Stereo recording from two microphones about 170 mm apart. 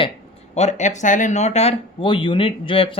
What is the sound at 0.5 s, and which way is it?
Speech, 45° left (ahead or behind).